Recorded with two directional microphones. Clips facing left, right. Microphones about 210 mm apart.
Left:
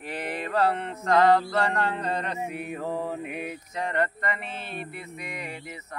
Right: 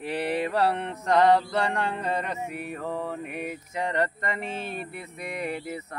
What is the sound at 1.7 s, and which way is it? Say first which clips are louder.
Mantra: even; 10° right (ahead or behind).